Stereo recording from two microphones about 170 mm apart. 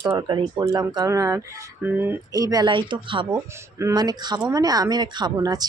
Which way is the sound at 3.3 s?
15° right (ahead or behind).